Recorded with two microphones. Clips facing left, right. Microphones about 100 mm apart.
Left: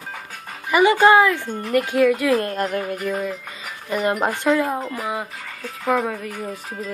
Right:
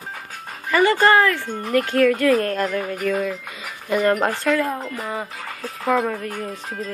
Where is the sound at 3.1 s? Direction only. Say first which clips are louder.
Right 2 dB; 10° left (ahead or behind).